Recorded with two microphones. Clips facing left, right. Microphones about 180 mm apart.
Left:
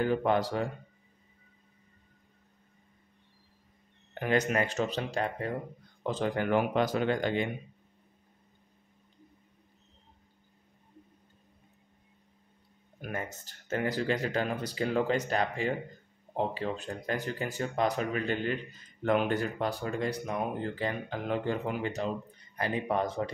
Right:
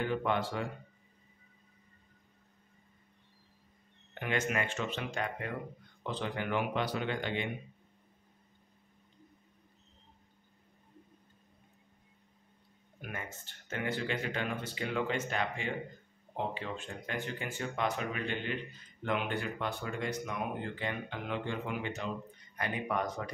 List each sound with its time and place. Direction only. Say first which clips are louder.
0.0 s speech: left 5 dB; 40° left (ahead or behind)
4.1 s speech: left 6 dB; 40° left (ahead or behind)
13.0 s speech: left 6 dB; 40° left (ahead or behind)